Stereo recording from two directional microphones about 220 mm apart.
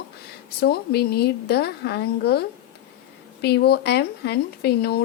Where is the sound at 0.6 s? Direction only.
45° left (ahead or behind).